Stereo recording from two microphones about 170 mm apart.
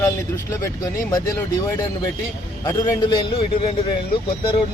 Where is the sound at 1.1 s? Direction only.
20° left (ahead or behind).